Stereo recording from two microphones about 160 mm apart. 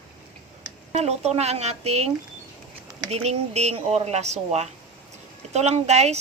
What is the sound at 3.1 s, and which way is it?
Speech, 40° right (ahead or behind).